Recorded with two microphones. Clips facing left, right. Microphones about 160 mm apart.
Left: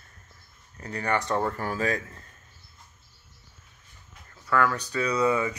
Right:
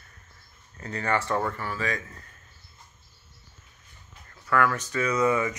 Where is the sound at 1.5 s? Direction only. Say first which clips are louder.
Left 3 dB; 45° left (ahead or behind).